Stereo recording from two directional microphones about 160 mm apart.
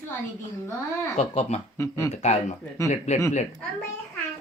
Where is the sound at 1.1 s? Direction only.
40° left (ahead or behind).